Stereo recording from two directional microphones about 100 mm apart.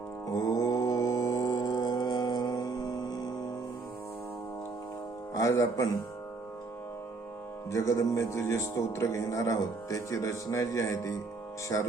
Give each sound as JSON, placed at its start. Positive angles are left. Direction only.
{"t": 0.3, "sound": "mantra", "side_deg": 35}
{"t": 5.3, "sound": "speech", "side_deg": 30}
{"t": 7.7, "sound": "speech", "side_deg": 35}